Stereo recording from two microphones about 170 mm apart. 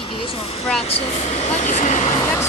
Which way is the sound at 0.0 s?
30° left (ahead or behind).